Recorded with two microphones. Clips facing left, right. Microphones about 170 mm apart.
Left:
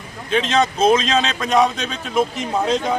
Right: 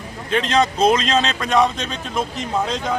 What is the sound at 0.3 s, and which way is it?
Speech, 20° left (ahead or behind).